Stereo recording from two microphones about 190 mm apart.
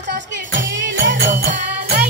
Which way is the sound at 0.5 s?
80° right.